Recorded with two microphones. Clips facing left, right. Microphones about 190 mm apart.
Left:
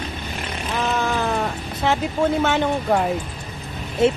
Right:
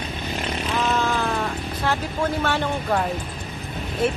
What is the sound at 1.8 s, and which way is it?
Speech, 20° left (ahead or behind).